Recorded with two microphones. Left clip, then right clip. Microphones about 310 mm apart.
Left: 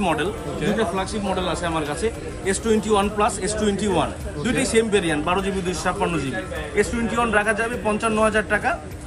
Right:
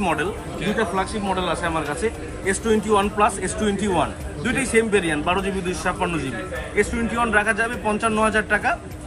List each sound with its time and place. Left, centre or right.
0.0 s speech: centre